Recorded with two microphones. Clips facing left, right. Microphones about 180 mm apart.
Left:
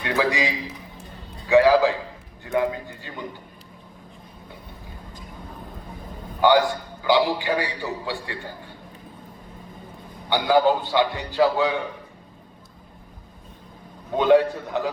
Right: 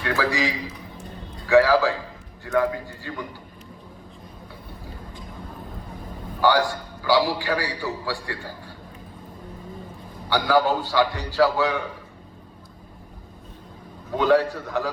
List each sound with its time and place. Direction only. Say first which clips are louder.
0.0 s a man's voice: left 1 dB; 20° left (ahead or behind)
6.4 s a man's voice: left 2 dB; 20° left (ahead or behind)
10.2 s a man's voice: left 2 dB; 20° left (ahead or behind)
14.2 s a man's voice: left 2 dB; 20° left (ahead or behind)